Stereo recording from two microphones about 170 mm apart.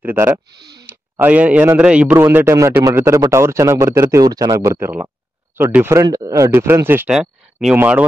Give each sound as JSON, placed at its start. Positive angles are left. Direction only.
{"t": 0.0, "sound": "speech", "side_deg": -15}
{"t": 0.8, "sound": "a man's voice", "side_deg": -10}